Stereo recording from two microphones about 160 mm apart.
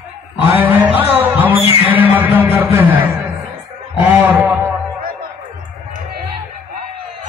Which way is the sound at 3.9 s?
10° right (ahead or behind).